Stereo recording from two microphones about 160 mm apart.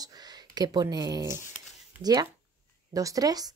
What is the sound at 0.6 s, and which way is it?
Speech, 25° right (ahead or behind).